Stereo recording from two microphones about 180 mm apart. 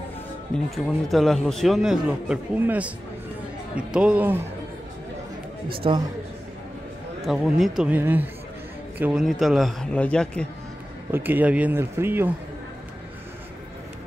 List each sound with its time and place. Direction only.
0.7 s a man's voice: centre (ahead or behind)
5.7 s a man's voice: 30° right (ahead or behind)
7.2 s a man's voice: centre (ahead or behind)
11.1 s a man's voice: 10° right (ahead or behind)